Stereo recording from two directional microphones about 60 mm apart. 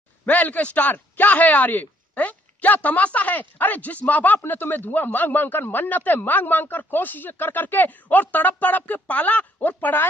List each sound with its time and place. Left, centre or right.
0.2 s a man's voice: left